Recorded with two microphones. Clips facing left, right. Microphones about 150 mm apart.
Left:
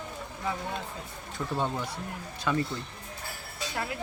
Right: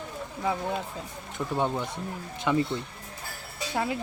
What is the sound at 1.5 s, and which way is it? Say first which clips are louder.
Speech: right 3 dB; 20° right (ahead or behind).